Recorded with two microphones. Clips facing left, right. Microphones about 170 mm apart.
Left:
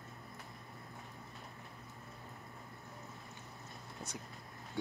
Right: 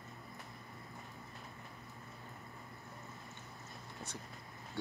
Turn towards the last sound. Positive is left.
turn(degrees=0)  # may be behind; listen again after turning